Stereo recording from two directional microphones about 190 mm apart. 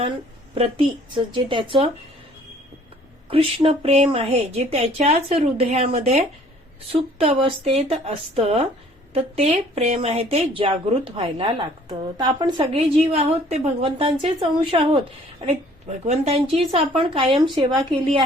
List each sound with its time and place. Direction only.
1.1 s speech: 25° right (ahead or behind)
3.2 s a woman's voice: 30° right (ahead or behind)